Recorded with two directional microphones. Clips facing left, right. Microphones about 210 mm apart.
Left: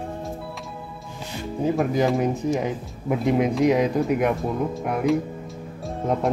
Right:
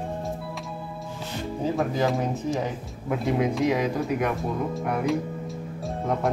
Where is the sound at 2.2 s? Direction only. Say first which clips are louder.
Left 4 dB; 15° left (ahead or behind).